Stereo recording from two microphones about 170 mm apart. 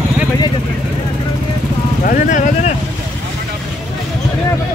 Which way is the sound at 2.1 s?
45° left (ahead or behind).